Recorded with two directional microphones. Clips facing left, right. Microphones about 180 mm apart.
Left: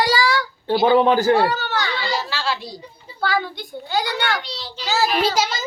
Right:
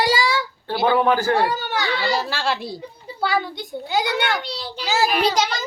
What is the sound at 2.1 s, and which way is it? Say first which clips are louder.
Speech: right 2 dB; 50° right (ahead or behind).